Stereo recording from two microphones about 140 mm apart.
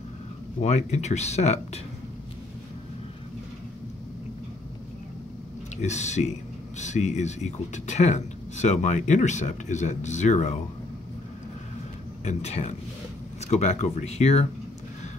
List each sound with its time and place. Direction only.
0.6 s speech: 50° left (ahead or behind)
5.8 s speech: 55° left (ahead or behind)
12.3 s speech: 50° left (ahead or behind)